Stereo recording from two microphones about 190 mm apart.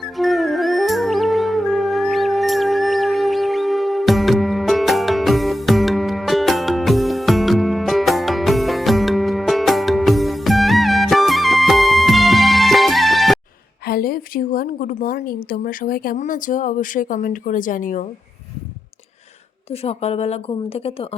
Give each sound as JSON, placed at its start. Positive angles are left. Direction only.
{"t": 0.0, "sound": "music", "side_deg": 0}
{"t": 13.8, "sound": "a woman's voice", "side_deg": 50}
{"t": 19.7, "sound": "a woman's voice", "side_deg": 30}